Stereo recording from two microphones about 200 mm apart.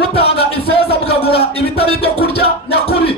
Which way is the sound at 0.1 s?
30° left (ahead or behind).